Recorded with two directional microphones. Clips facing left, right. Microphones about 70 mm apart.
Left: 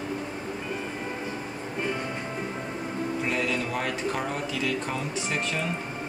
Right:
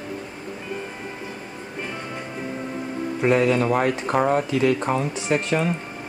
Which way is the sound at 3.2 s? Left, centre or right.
Right.